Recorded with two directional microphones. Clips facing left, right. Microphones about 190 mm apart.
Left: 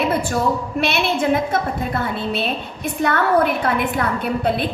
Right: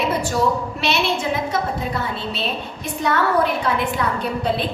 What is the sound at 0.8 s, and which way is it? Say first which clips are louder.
A woman's voice: left 2 dB; 55° left (ahead or behind).